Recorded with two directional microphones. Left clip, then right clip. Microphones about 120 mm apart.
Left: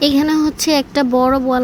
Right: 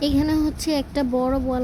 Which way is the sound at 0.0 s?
45° left (ahead or behind).